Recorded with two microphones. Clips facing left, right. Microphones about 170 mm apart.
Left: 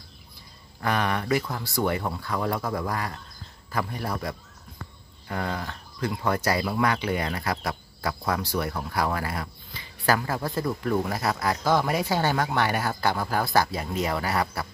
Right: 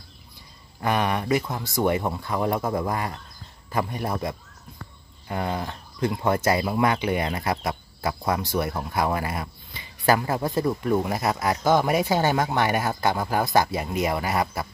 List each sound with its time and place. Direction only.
0.7 s speech: 20° right (ahead or behind)